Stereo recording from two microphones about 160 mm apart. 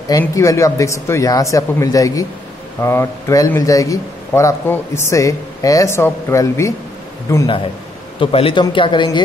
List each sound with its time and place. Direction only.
0.2 s speech: 20° left (ahead or behind)
8.2 s speech: 35° left (ahead or behind)